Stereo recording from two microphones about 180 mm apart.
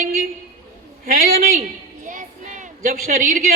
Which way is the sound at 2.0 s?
45° right (ahead or behind).